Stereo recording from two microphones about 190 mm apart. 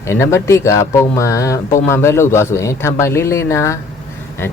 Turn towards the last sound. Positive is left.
turn(degrees=15)  # may be behind; listen again after turning